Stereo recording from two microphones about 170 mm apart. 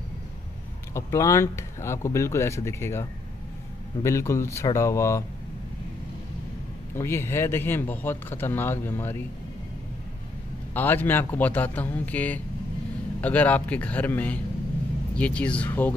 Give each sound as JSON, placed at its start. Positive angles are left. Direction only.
{"t": 0.9, "sound": "speech", "side_deg": 15}
{"t": 7.0, "sound": "speech", "side_deg": 15}
{"t": 10.7, "sound": "speech", "side_deg": 10}